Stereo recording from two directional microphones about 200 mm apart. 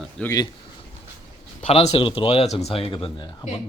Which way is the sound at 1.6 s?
30° left (ahead or behind).